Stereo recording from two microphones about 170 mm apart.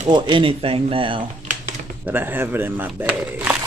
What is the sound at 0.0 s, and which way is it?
Speech, 25° right (ahead or behind).